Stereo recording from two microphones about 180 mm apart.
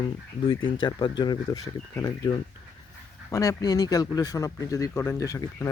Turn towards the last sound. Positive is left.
turn(degrees=20)  # may be behind; listen again after turning